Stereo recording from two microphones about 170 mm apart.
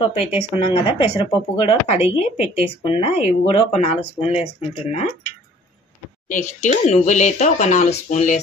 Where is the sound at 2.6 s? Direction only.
35° left (ahead or behind).